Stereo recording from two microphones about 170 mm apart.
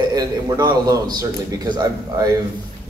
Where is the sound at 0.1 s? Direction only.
25° right (ahead or behind).